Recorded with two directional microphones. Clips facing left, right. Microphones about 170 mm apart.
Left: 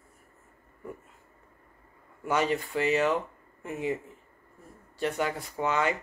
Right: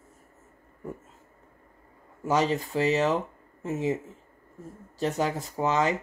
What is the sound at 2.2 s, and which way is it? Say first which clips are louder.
Speech: right 2 dB; 40° right (ahead or behind).